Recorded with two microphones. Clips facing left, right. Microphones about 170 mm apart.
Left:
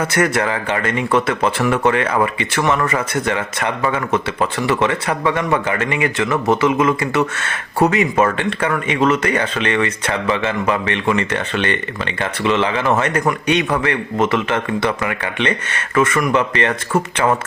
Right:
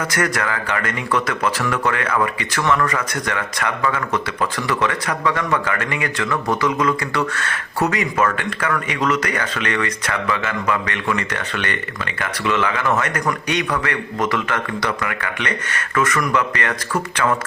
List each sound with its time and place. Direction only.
0.0 s speech: 25° left (ahead or behind)